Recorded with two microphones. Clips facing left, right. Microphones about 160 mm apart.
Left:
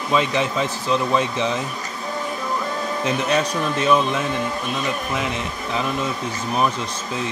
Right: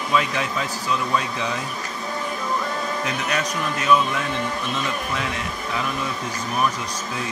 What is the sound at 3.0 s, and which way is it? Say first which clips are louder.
Speech: left 8 dB; 30° left (ahead or behind).